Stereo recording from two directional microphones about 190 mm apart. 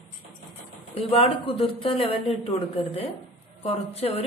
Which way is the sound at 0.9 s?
30° left (ahead or behind).